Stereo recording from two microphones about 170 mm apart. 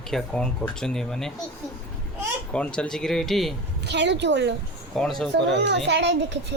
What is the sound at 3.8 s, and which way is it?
Speech, 90° right.